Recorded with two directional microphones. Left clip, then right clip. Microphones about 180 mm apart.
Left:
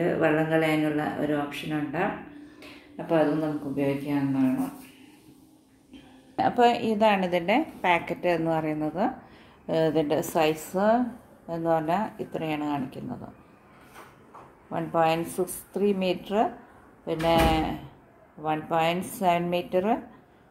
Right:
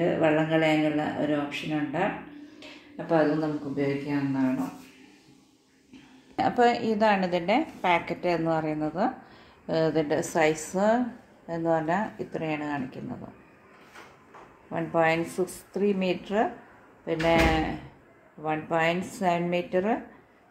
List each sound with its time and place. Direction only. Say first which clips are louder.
0.0 s a woman's voice: even; 5° right (ahead or behind)
3.7 s a woman's voice: left 2 dB; centre (ahead or behind)
6.3 s a woman's voice: left 1 dB; 15° right (ahead or behind)
6.6 s a woman's voice: left 1 dB; 40° right (ahead or behind)
6.9 s a woman's voice: left 1 dB; centre (ahead or behind)
14.7 s a woman's voice: even; 5° right (ahead or behind)